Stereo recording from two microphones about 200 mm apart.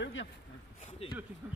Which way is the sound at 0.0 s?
70° left (ahead or behind).